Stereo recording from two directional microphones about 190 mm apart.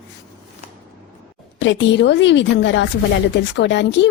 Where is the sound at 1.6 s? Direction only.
70° left (ahead or behind).